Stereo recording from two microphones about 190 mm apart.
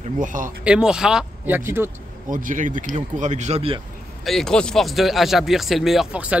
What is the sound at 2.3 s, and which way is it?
Speech, 45° right (ahead or behind).